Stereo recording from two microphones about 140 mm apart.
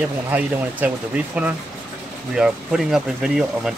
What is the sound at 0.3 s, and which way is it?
Speech, 10° right (ahead or behind).